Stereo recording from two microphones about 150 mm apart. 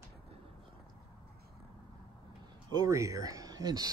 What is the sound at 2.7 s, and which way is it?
Speech, 20° right (ahead or behind).